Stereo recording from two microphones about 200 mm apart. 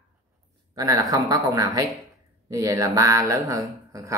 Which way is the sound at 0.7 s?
15° right (ahead or behind).